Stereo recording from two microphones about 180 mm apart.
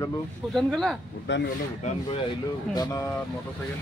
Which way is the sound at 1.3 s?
80° left.